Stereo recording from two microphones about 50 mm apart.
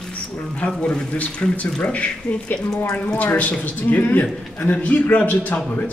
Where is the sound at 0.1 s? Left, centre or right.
Left.